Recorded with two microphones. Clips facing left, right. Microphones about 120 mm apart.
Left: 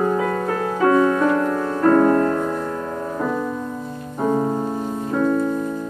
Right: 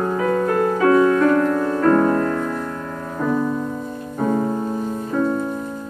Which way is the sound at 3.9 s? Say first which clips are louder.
Left 2 dB; 15° left (ahead or behind).